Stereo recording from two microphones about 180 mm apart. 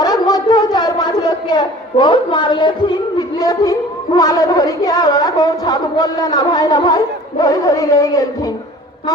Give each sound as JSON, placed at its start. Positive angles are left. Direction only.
{"t": 0.0, "sound": "a woman's voice", "side_deg": 20}